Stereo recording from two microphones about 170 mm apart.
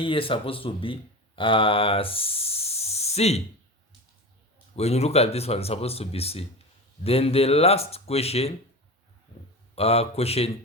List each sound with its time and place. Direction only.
0.0 s speech: 30° left (ahead or behind)
4.8 s speech: 40° left (ahead or behind)
9.7 s speech: 35° left (ahead or behind)